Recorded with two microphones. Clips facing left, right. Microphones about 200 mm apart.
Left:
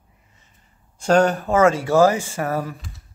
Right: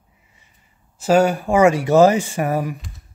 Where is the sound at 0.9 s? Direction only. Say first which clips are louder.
Right 1 dB; 5° right (ahead or behind).